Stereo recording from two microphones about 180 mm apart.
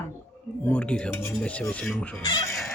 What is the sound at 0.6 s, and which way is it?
Speech, 5° left (ahead or behind).